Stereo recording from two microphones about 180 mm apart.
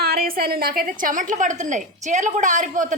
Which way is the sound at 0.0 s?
60° right (ahead or behind).